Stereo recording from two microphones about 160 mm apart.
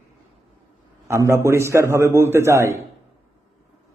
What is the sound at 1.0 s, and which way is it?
A man's voice, 20° right (ahead or behind).